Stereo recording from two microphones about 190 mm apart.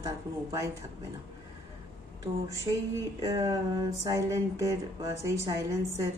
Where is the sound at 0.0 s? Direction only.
15° right (ahead or behind).